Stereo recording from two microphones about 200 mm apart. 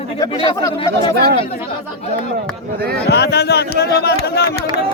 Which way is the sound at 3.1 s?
55° left (ahead or behind).